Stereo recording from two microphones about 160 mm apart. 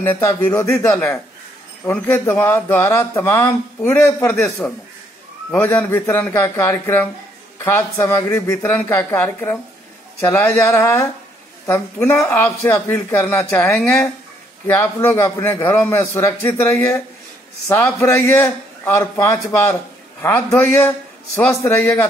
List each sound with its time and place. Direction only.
0.0 s speech: 15° left (ahead or behind)
13.7 s a man's voice: 5° left (ahead or behind)